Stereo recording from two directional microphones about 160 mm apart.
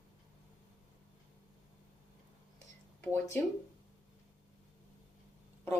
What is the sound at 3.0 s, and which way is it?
Speech, 15° left (ahead or behind).